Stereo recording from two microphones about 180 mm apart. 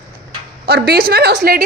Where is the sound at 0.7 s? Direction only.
60° right (ahead or behind).